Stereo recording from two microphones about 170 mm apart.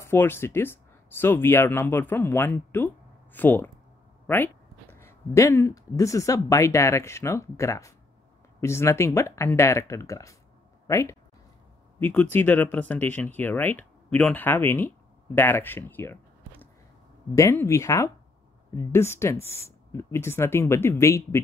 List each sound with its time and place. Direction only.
0.0 s speech: 15° left (ahead or behind)
4.9 s speech: 15° left (ahead or behind)